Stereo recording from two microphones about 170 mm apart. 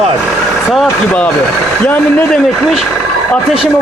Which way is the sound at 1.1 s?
5° left (ahead or behind).